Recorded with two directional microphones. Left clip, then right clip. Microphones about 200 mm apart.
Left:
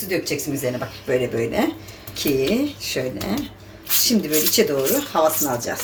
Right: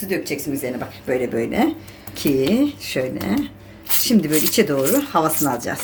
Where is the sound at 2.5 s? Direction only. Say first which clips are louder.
Right 2 dB; 55° right (ahead or behind).